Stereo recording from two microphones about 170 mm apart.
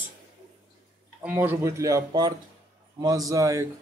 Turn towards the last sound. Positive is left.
turn(degrees=-20)  # may be behind; listen again after turning